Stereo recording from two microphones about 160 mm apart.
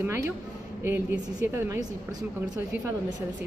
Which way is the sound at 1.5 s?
15° right (ahead or behind).